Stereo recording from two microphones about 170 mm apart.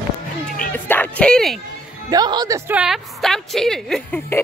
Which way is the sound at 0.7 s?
10° left (ahead or behind).